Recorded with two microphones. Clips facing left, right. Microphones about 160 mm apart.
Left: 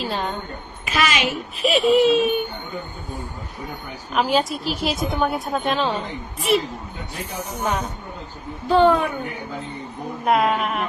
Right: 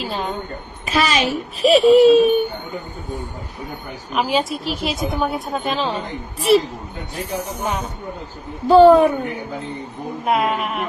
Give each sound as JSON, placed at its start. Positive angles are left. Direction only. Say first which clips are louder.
{"t": 0.0, "sound": "a sound", "louder": "right 1 dB", "side_deg": 0}
{"t": 0.9, "sound": "a child's voice", "louder": "right 3 dB", "side_deg": -35}
{"t": 4.1, "sound": "a woman's voice", "louder": "even", "side_deg": 0}
{"t": 7.3, "sound": "speech", "louder": "right 1 dB", "side_deg": -10}
{"t": 8.6, "sound": "a child's voice", "louder": "right 7 dB", "side_deg": -40}
{"t": 10.2, "sound": "a woman's voice", "louder": "left 1 dB", "side_deg": 0}